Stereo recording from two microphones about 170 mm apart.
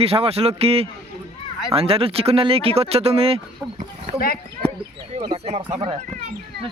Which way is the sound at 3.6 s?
10° right (ahead or behind).